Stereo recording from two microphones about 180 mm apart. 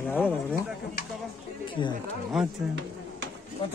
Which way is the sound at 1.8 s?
25° left (ahead or behind).